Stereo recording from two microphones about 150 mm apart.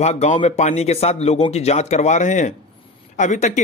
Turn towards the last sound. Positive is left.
turn(degrees=50)  # may be behind; listen again after turning